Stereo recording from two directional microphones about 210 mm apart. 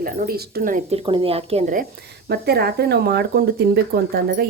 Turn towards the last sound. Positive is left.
turn(degrees=-50)  # may be behind; listen again after turning